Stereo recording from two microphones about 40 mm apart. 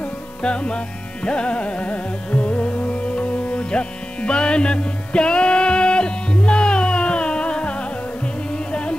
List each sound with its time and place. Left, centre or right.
0.0 s music: left